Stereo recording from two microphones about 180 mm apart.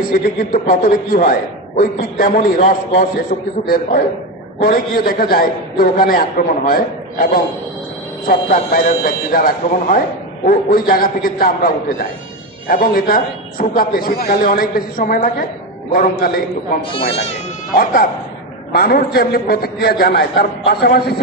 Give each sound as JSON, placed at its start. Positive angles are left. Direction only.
{"t": 0.0, "sound": "a man's voice", "side_deg": 55}
{"t": 8.7, "sound": "a man's voice", "side_deg": 50}
{"t": 16.9, "sound": "speech", "side_deg": 35}
{"t": 18.7, "sound": "a man's voice", "side_deg": 55}